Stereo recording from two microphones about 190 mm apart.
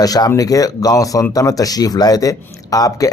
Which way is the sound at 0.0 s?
20° left (ahead or behind).